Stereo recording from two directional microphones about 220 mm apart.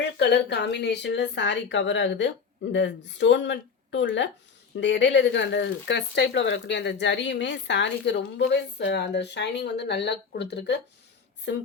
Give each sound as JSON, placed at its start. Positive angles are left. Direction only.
{"t": 0.0, "sound": "speech", "side_deg": 50}